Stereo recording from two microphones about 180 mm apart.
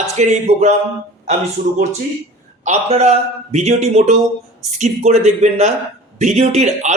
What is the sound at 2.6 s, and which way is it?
A man's voice, 40° right (ahead or behind).